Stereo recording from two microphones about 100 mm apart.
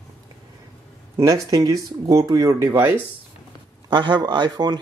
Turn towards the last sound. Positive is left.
turn(degrees=-45)  # may be behind; listen again after turning